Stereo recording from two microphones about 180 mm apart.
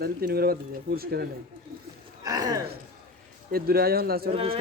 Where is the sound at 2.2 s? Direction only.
20° right (ahead or behind).